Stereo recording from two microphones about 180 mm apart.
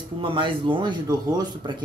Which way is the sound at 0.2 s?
30° right (ahead or behind).